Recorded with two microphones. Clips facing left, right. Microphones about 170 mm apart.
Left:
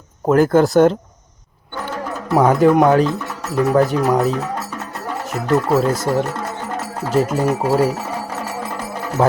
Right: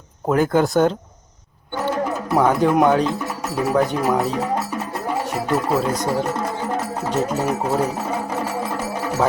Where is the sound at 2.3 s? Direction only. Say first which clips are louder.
Left 4 dB; centre (ahead or behind).